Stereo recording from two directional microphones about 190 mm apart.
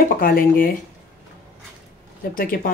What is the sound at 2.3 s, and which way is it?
Speech, 50° left (ahead or behind).